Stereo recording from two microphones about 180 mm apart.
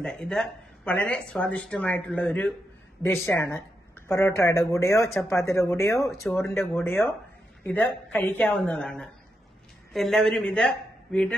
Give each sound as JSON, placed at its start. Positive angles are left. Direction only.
{"t": 0.0, "sound": "speech", "side_deg": 5}